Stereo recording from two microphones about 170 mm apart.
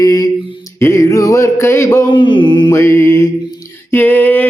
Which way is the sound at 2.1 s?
30° left (ahead or behind).